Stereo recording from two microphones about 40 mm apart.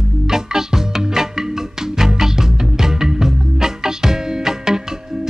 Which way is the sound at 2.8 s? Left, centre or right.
Centre.